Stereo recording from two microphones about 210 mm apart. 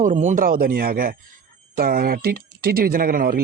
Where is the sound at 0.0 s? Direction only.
35° right (ahead or behind).